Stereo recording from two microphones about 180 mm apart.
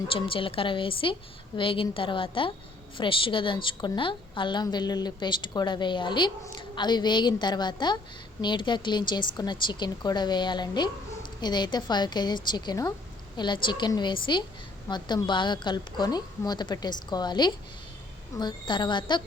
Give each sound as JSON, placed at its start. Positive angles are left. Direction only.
{"t": 0.1, "sound": "a woman's voice", "side_deg": 30}